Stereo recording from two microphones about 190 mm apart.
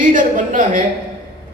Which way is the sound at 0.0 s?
45° right (ahead or behind).